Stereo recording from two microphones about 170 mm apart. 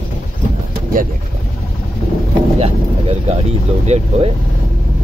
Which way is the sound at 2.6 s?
35° right (ahead or behind).